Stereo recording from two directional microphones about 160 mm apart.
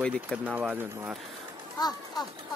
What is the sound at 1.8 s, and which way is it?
Speech, 25° left (ahead or behind).